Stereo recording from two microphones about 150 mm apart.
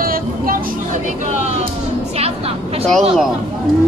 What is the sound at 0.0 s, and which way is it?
Vehicle, 75° right (ahead or behind).